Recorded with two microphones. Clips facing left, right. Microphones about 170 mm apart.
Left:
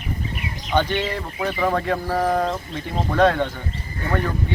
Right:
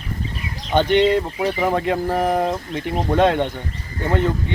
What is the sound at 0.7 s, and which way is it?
Speech, 20° right (ahead or behind).